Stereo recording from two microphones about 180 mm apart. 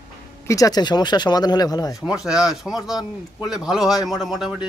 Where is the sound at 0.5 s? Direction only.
20° left (ahead or behind).